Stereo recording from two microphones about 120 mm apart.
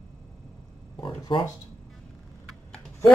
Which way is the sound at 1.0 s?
40° left (ahead or behind).